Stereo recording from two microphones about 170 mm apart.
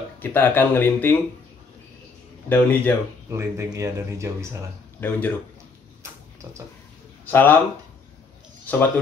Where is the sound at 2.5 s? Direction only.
10° left (ahead or behind).